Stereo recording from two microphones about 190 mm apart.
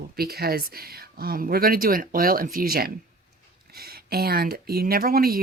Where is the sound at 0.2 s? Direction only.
55° right (ahead or behind).